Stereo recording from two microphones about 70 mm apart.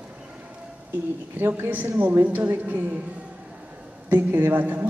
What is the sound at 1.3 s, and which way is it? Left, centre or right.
A man's voice, right.